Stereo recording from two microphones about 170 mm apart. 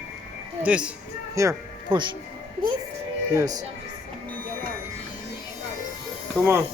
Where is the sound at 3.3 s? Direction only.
20° right (ahead or behind).